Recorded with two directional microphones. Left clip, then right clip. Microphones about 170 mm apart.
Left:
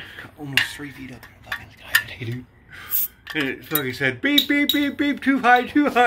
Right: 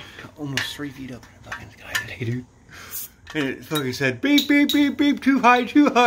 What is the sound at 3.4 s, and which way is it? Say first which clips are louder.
Speech: right 1 dB; 90° right.